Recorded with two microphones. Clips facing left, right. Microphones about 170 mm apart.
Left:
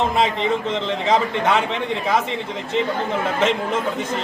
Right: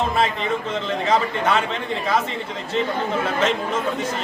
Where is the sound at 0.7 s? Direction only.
20° left (ahead or behind).